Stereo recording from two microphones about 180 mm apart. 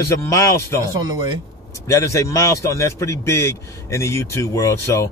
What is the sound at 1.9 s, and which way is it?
A man's voice, 15° left (ahead or behind).